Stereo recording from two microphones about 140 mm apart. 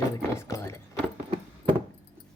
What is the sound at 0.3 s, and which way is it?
Keys jangling, 20° left (ahead or behind).